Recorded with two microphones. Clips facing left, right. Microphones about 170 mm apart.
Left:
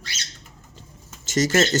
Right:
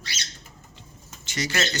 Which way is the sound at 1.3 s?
45° left (ahead or behind).